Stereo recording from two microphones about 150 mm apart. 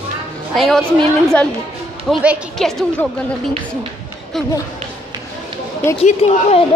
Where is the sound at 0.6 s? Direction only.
5° left (ahead or behind).